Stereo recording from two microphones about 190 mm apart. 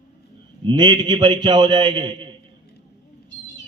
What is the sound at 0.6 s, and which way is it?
A man's voice, 25° right (ahead or behind).